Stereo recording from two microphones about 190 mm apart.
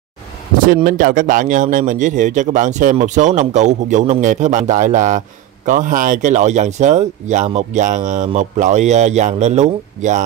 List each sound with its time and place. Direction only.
0.8 s speech: 45° right (ahead or behind)